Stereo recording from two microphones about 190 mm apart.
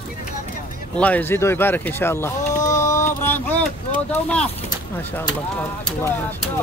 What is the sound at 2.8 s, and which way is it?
Mantra, 40° left (ahead or behind).